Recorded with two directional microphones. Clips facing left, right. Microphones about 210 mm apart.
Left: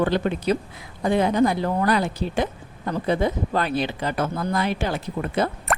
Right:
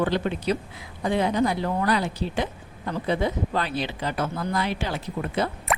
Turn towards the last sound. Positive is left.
turn(degrees=50)  # may be behind; listen again after turning